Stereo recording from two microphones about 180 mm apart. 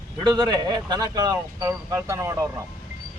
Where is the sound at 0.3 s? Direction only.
25° right (ahead or behind).